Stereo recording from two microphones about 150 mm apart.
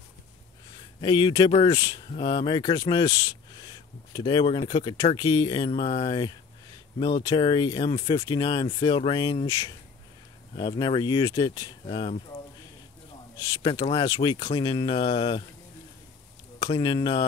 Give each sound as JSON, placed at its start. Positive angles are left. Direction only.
{"t": 1.0, "sound": "speech", "side_deg": 30}
{"t": 11.8, "sound": "speech", "side_deg": 40}
{"t": 13.6, "sound": "speech", "side_deg": 35}
{"t": 16.6, "sound": "speech", "side_deg": 35}